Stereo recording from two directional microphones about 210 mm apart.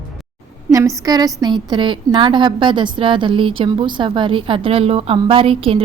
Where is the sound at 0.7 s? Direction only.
15° right (ahead or behind).